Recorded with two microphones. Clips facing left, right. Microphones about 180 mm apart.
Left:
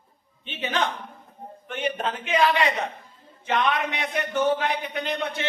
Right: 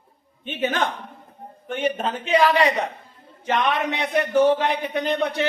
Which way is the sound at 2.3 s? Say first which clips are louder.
Right 4 dB; 40° right (ahead or behind).